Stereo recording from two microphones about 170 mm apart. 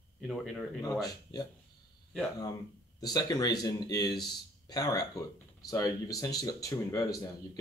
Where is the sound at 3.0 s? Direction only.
20° left (ahead or behind).